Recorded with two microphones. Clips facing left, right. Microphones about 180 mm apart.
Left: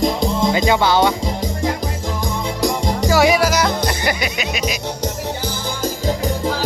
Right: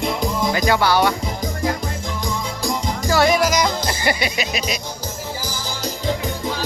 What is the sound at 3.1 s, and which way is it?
Music, 10° left (ahead or behind).